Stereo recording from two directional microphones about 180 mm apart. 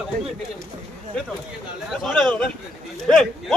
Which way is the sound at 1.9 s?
Centre (ahead or behind).